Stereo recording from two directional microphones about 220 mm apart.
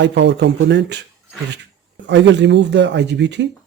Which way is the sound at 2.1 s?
55° right (ahead or behind).